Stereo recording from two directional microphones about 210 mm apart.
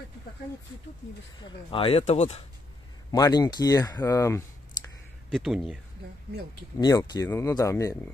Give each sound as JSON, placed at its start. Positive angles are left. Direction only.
{"t": 1.4, "sound": "speech", "side_deg": 25}
{"t": 3.1, "sound": "speech", "side_deg": 20}
{"t": 5.3, "sound": "speech", "side_deg": 0}
{"t": 6.8, "sound": "speech", "side_deg": 20}